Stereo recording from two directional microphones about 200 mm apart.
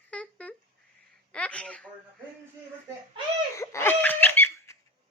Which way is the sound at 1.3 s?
5° left (ahead or behind).